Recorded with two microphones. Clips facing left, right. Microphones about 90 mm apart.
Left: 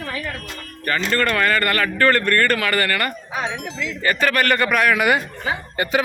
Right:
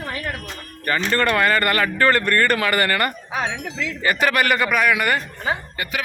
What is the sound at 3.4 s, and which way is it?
Speech, 90° left.